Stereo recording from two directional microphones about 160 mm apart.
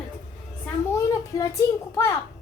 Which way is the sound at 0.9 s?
20° left (ahead or behind).